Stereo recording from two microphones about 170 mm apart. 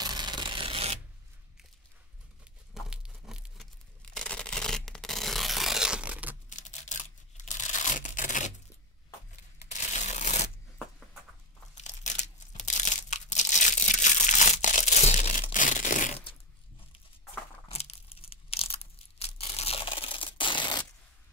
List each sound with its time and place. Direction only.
0.0 s mechanisms: 25° right (ahead or behind)
2.7 s tearing: 5° right (ahead or behind)
6.5 s tearing: 45° left (ahead or behind)
9.7 s a sound: 45° left (ahead or behind)
11.7 s crumpling: 45° left (ahead or behind)
17.6 s tearing: 35° left (ahead or behind)